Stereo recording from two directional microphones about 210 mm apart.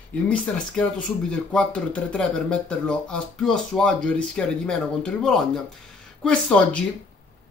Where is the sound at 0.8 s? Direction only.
5° left (ahead or behind).